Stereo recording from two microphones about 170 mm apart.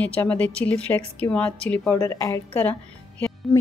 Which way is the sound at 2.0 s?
20° left (ahead or behind).